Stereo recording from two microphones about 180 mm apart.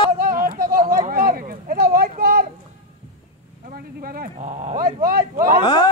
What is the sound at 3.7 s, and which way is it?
Speech, 55° right (ahead or behind).